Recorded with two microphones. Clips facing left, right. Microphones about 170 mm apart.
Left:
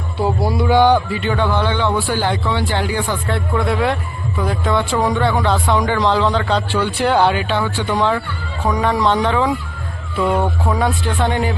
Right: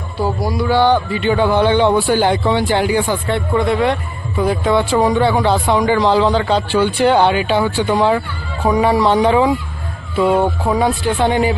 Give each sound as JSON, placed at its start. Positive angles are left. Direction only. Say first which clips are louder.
{"t": 0.2, "sound": "a man's voice", "louder": "even", "side_deg": 25}
{"t": 3.2, "sound": "a man's voice", "louder": "right 3 dB", "side_deg": 0}
{"t": 10.3, "sound": "speech", "louder": "right 3 dB", "side_deg": -30}
{"t": 10.7, "sound": "a man's voice", "louder": "right 3 dB", "side_deg": 0}